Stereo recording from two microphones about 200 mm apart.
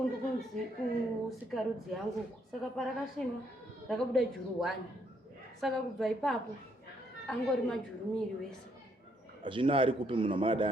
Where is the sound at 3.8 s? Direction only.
Centre (ahead or behind).